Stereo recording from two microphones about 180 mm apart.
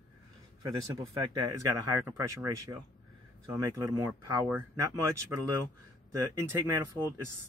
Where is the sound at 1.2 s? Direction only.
20° right (ahead or behind).